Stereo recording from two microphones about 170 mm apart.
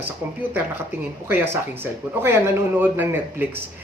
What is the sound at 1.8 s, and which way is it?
Speech, 10° right (ahead or behind).